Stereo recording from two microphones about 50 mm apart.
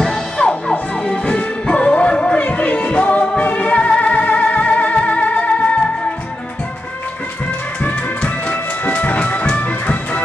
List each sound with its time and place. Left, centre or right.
0.0 s music: centre; by 5.8 s left
7.8 s music: left